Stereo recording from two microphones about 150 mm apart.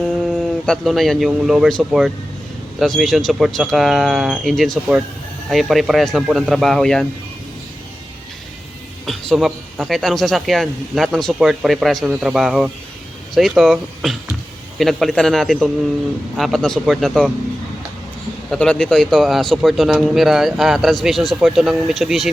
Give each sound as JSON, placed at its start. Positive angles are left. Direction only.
{"t": 0.0, "sound": "speech", "side_deg": 0}
{"t": 9.0, "sound": "a man's voice", "side_deg": 0}
{"t": 18.5, "sound": "speech", "side_deg": 5}